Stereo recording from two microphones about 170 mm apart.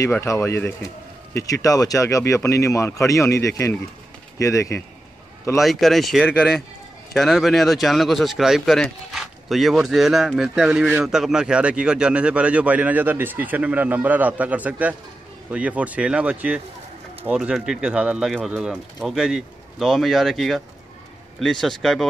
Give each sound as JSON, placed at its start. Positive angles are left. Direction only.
{"t": 0.0, "sound": "speech", "side_deg": 15}
{"t": 5.6, "sound": "speech", "side_deg": 0}